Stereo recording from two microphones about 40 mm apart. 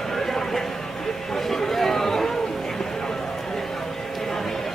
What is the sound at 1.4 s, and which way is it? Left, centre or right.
Chatter, centre.